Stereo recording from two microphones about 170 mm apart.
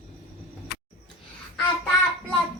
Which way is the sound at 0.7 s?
75° left (ahead or behind).